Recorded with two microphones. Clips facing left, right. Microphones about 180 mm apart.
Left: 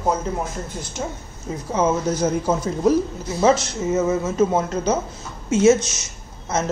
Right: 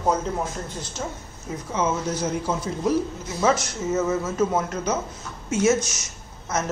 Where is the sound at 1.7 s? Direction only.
40° left (ahead or behind).